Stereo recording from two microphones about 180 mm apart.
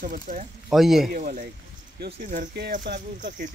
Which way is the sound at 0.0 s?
45° right (ahead or behind).